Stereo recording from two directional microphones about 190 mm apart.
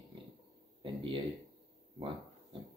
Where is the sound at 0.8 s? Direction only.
25° right (ahead or behind).